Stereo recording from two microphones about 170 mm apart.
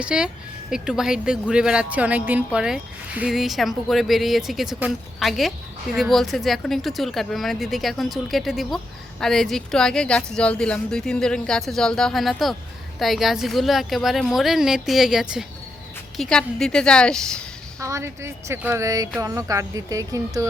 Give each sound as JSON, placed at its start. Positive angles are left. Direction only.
{"t": 0.0, "sound": "a woman's voice", "side_deg": -5}
{"t": 17.7, "sound": "speech", "side_deg": -15}